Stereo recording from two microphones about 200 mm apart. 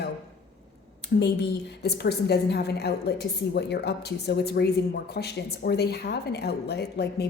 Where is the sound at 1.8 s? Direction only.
55° left (ahead or behind).